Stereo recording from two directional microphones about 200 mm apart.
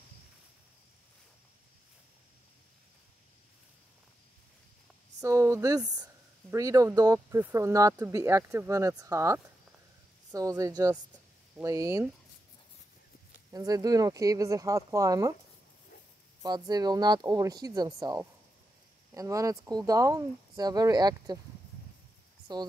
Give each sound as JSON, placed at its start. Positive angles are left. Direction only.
{"t": 5.2, "sound": "speech", "side_deg": -15}
{"t": 13.5, "sound": "speech", "side_deg": -20}
{"t": 16.4, "sound": "speech", "side_deg": -20}
{"t": 22.5, "sound": "speech", "side_deg": -20}